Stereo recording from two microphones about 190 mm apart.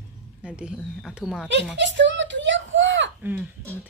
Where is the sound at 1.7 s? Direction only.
70° right (ahead or behind).